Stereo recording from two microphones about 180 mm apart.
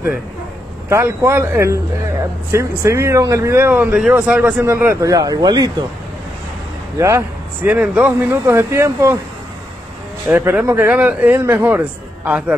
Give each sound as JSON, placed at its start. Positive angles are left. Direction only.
{"t": 0.8, "sound": "speech", "side_deg": -15}
{"t": 7.0, "sound": "speech", "side_deg": -15}
{"t": 10.2, "sound": "speech", "side_deg": -10}